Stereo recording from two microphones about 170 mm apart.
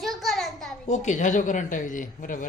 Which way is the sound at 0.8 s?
45° left (ahead or behind).